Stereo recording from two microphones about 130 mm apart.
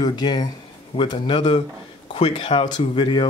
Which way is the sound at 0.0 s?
30° left (ahead or behind).